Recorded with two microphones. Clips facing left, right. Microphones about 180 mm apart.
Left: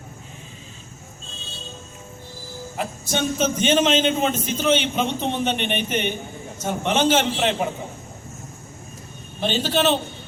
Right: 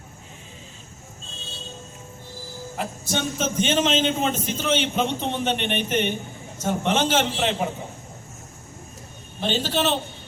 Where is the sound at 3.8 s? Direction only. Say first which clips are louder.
Left 2 dB; 5° left (ahead or behind).